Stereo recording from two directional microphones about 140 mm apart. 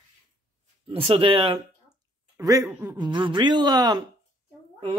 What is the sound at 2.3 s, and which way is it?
Speech, 25° right (ahead or behind).